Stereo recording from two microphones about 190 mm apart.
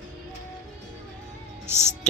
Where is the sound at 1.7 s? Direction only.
15° right (ahead or behind).